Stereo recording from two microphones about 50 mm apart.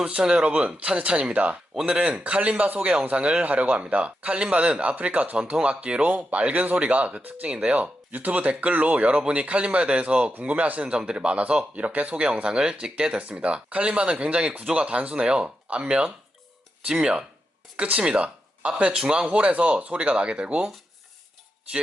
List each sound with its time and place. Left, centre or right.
0.0 s speech: centre